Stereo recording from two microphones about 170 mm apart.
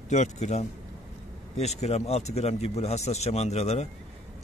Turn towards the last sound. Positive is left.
turn(degrees=40)  # may be behind; listen again after turning